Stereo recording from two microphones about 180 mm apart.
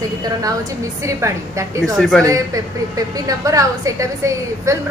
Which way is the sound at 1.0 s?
15° right (ahead or behind).